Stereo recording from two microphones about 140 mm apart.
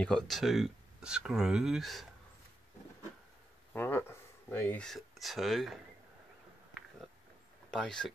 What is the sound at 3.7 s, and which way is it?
Speech, 15° left (ahead or behind).